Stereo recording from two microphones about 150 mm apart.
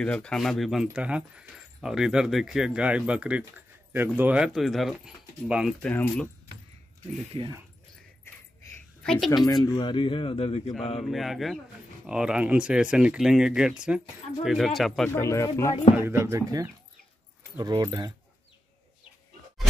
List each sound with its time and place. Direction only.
0.0 s speech: 5° left (ahead or behind)
5.8 s speech: 10° left (ahead or behind)
9.0 s speech: centre (ahead or behind)
9.7 s speech: 30° left (ahead or behind)
11.0 s speech: centre (ahead or behind)
15.1 s speech: 20° left (ahead or behind)
16.0 s speech: 15° right (ahead or behind)